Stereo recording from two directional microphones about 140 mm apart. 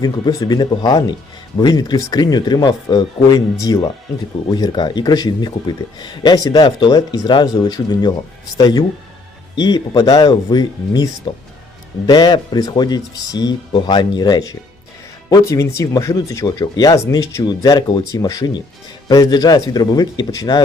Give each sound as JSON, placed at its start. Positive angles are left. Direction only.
{"t": 0.0, "sound": "speech", "side_deg": 30}